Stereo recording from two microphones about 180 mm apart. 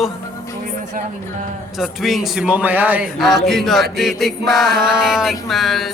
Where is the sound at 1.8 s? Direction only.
Centre (ahead or behind).